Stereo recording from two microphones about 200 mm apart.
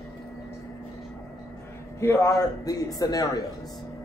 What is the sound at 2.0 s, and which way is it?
A man's voice, 15° left (ahead or behind).